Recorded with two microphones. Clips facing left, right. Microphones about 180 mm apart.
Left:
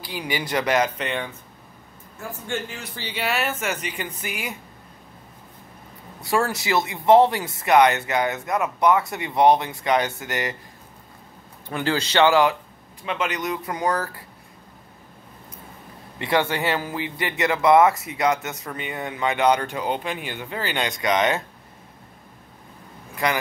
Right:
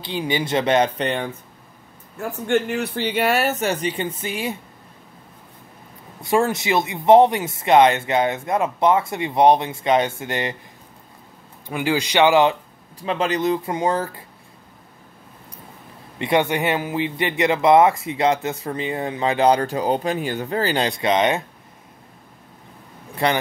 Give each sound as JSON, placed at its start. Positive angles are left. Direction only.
{"t": 0.0, "sound": "speech", "side_deg": -25}
{"t": 2.1, "sound": "speech", "side_deg": -65}
{"t": 6.2, "sound": "speech", "side_deg": -20}
{"t": 11.6, "sound": "speech", "side_deg": -15}
{"t": 13.0, "sound": "speech", "side_deg": -35}
{"t": 16.2, "sound": "speech", "side_deg": -20}
{"t": 23.2, "sound": "speech", "side_deg": -30}